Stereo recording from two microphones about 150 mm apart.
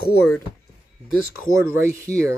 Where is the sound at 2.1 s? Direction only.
10° left (ahead or behind).